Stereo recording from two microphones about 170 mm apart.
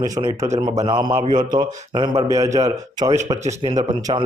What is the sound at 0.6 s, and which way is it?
A man's voice, 25° right (ahead or behind).